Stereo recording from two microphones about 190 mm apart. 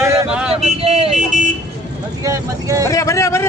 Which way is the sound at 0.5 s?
35° right (ahead or behind).